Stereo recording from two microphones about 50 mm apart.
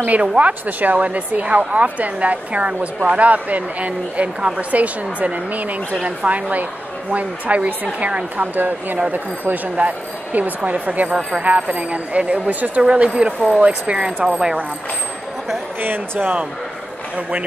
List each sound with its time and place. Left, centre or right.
0.0 s speech: right
8.4 s speech: right
12.8 s speech: centre
14.2 s speech: centre
15.8 s speech: right